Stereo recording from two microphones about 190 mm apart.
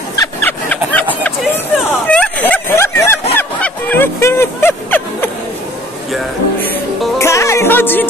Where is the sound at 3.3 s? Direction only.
10° left (ahead or behind).